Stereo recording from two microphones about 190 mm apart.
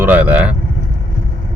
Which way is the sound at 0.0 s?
10° right (ahead or behind).